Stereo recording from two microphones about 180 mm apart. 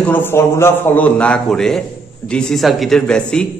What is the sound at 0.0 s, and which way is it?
A man's voice, 10° left (ahead or behind).